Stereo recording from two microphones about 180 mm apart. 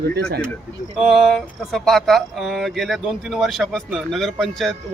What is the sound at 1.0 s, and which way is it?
Speech, centre (ahead or behind).